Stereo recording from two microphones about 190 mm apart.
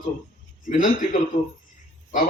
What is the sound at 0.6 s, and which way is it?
Speech, 45° left (ahead or behind).